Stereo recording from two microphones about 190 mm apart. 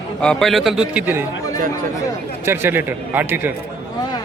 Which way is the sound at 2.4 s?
10° right (ahead or behind).